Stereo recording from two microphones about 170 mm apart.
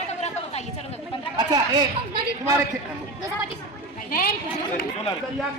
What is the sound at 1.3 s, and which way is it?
Speech, 25° right (ahead or behind).